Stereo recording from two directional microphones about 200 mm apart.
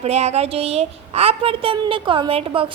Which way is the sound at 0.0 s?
30° right (ahead or behind).